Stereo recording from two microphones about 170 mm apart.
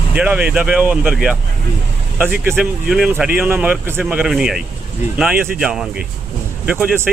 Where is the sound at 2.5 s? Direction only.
10° right (ahead or behind).